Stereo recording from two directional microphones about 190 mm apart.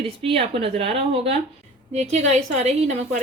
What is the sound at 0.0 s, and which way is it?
A woman's voice, 30° right (ahead or behind).